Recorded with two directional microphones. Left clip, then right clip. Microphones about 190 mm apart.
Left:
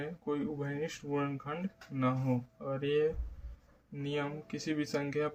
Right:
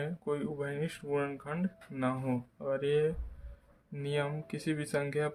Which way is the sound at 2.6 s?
30° right (ahead or behind).